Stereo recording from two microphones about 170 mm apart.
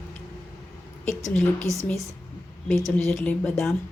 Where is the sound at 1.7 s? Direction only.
20° left (ahead or behind).